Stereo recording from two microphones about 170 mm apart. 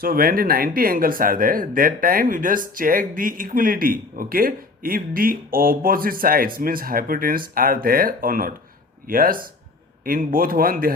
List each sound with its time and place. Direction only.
0.0 s speech: 60° right (ahead or behind)